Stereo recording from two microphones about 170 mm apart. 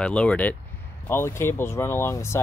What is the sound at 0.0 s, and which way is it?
Speech, 5° left (ahead or behind).